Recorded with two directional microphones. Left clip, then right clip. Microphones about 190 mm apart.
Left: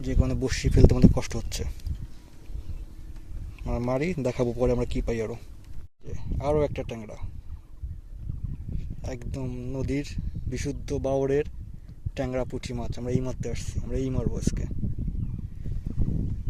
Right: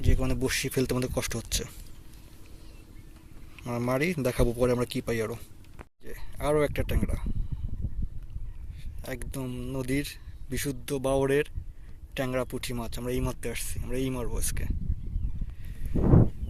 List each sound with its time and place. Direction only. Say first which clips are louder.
0.0 s speech: left 1 dB; 10° left (ahead or behind)
3.6 s speech: even; 5° left (ahead or behind)
9.0 s speech: even; 5° left (ahead or behind)
15.2 s a sound: left 7 dB; 40° right (ahead or behind)